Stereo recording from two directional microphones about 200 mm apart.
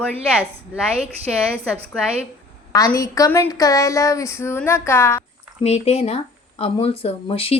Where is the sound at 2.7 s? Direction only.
15° left (ahead or behind).